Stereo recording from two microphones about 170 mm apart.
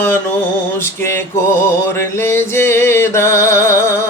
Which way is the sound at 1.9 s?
15° left (ahead or behind).